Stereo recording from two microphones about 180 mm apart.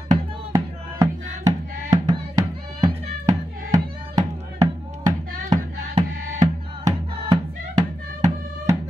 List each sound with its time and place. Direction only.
0.5 s music: 20° right (ahead or behind)